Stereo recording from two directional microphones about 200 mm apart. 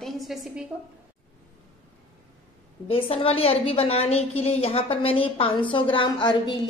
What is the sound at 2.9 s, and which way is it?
A woman's voice, 30° left (ahead or behind).